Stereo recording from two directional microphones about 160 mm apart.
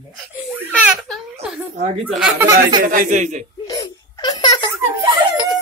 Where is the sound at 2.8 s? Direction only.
60° right (ahead or behind).